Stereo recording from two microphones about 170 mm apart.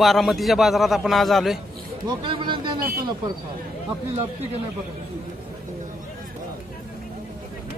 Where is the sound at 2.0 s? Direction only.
25° right (ahead or behind).